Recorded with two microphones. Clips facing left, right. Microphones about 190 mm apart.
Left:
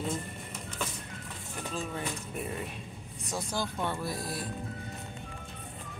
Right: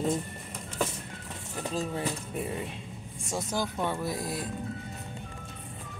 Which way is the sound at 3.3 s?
20° right (ahead or behind).